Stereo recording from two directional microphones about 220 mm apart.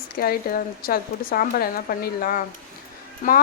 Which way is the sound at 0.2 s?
40° left (ahead or behind).